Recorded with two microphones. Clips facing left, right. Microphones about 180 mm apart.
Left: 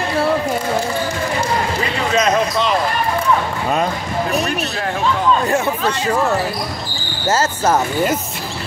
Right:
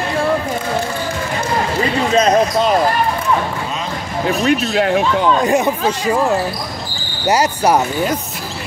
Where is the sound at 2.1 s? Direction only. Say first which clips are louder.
Right 3 dB; 35° right (ahead or behind).